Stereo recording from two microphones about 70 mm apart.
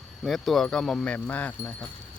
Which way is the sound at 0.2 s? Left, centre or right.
Centre.